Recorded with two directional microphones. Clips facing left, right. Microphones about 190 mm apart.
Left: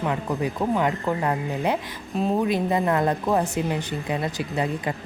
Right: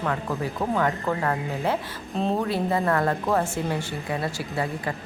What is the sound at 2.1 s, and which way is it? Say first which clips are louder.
Speech: left 1 dB; 5° left (ahead or behind).